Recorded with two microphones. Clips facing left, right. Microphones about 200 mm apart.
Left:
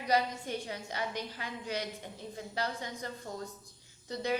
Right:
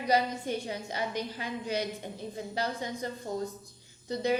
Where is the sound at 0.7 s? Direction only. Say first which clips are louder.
Right 3 dB; 25° right (ahead or behind).